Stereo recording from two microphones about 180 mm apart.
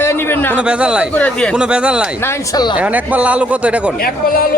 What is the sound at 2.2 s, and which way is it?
Speech, 15° left (ahead or behind).